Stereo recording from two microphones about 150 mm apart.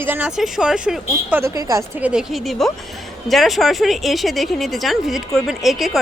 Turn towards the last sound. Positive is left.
turn(degrees=0)  # may be behind; listen again after turning